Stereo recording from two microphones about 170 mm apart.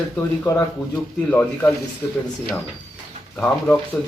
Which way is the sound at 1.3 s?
10° left (ahead or behind).